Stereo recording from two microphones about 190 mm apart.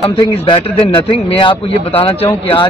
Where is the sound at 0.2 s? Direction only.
25° left (ahead or behind).